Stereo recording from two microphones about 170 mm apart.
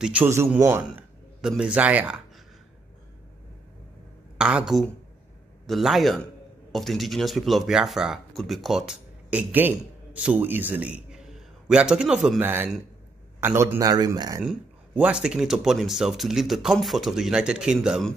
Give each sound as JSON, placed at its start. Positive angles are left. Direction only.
{"t": 0.0, "sound": "a man's voice", "side_deg": -10}
{"t": 4.4, "sound": "speech", "side_deg": -5}
{"t": 14.4, "sound": "speech", "side_deg": -5}